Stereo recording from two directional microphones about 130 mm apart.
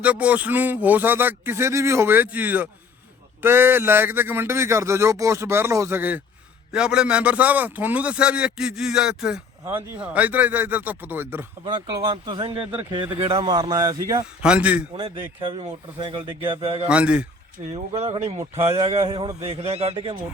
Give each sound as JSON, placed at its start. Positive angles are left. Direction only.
{"t": 0.0, "sound": "speech", "side_deg": -10}
{"t": 11.6, "sound": "speech", "side_deg": -35}
{"t": 14.4, "sound": "speech", "side_deg": -10}
{"t": 16.0, "sound": "speech", "side_deg": -35}
{"t": 16.9, "sound": "speech", "side_deg": -10}
{"t": 17.6, "sound": "speech", "side_deg": -60}